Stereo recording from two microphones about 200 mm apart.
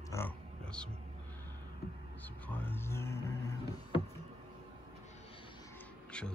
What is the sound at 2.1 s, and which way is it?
Vehicle, 10° left (ahead or behind).